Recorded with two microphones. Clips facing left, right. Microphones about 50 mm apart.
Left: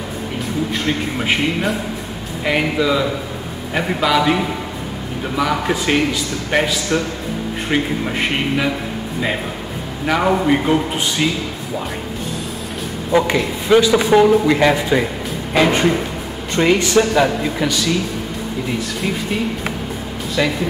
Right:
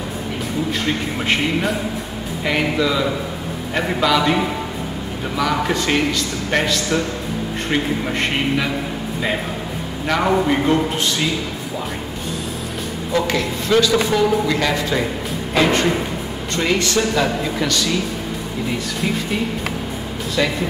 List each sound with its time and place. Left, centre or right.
0.8 s a man's voice: centre
10.0 s a man's voice: centre
13.1 s a man's voice: centre
15.5 s a sound: centre
16.5 s a man's voice: centre
20.4 s a man's voice: centre